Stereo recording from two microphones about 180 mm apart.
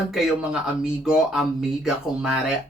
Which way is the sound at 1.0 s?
Centre (ahead or behind).